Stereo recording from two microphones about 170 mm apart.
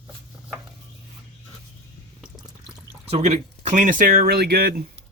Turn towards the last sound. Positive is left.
turn(degrees=-65)  # may be behind; listen again after turning